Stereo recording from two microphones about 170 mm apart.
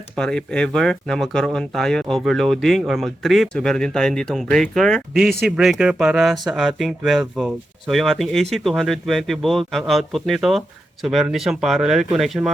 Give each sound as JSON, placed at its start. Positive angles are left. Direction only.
{"t": 0.2, "sound": "speech", "side_deg": 5}